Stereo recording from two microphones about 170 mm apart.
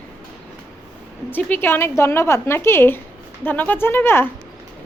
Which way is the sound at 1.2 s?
10° left (ahead or behind).